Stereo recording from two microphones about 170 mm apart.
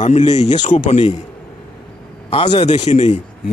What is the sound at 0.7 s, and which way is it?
Speech, 40° left (ahead or behind).